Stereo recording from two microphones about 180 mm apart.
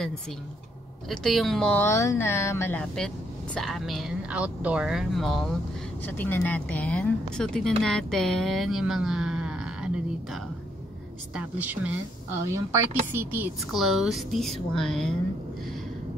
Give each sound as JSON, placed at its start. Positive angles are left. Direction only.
{"t": 1.0, "sound": "speech", "side_deg": 0}
{"t": 11.3, "sound": "speech", "side_deg": -10}
{"t": 13.7, "sound": "speech", "side_deg": 0}